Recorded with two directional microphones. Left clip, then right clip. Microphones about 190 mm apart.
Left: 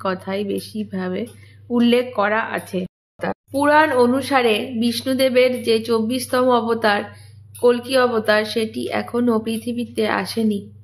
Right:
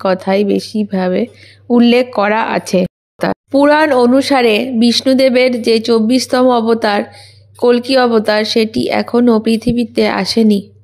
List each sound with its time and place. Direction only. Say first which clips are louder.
0.0 s speech: right 11 dB; 35° right (ahead or behind)